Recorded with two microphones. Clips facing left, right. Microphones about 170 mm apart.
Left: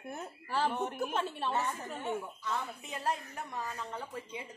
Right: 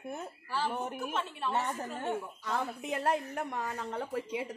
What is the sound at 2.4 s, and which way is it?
A woman's voice, 70° right (ahead or behind).